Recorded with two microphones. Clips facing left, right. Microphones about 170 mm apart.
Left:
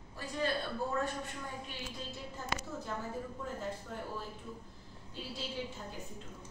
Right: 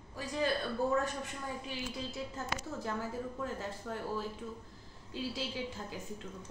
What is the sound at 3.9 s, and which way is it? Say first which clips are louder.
Speech: right 3 dB; 90° right.